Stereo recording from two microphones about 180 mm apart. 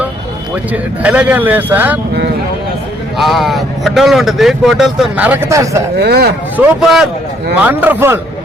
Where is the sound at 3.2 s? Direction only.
Centre (ahead or behind); by 5.8 s 15° right (ahead or behind).